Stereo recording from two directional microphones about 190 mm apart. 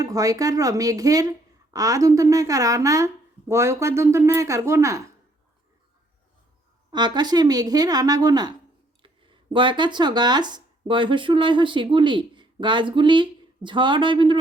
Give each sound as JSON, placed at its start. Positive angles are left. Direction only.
{"t": 0.0, "sound": "speech", "side_deg": -20}
{"t": 6.9, "sound": "a woman's voice", "side_deg": -20}